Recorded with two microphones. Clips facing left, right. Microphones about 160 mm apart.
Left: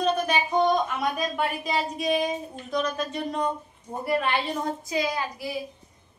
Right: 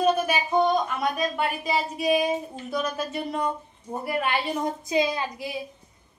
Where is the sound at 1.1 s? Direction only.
Centre (ahead or behind).